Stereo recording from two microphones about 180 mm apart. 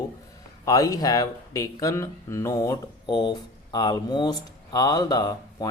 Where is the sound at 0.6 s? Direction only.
20° left (ahead or behind).